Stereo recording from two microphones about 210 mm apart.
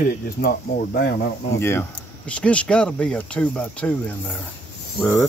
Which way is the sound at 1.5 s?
10° left (ahead or behind).